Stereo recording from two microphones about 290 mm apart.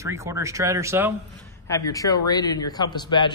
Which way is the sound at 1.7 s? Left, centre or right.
Centre.